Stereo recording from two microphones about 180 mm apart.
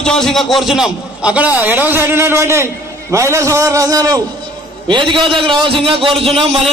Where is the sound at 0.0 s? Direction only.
5° left (ahead or behind).